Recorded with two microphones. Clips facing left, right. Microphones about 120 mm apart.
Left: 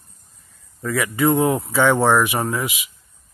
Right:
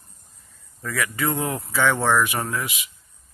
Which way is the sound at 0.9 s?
20° left (ahead or behind).